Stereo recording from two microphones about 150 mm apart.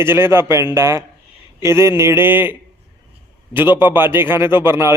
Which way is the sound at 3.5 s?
15° right (ahead or behind).